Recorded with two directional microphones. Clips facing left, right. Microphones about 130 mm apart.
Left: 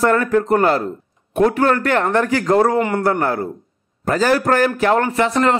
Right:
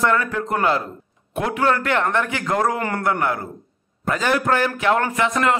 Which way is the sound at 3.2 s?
35° left (ahead or behind).